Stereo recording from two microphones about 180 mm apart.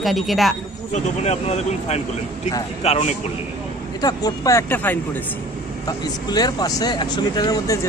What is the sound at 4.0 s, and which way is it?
Speech, 20° left (ahead or behind).